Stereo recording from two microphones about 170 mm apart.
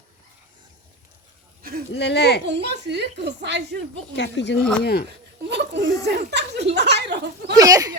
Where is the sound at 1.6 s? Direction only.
60° right (ahead or behind).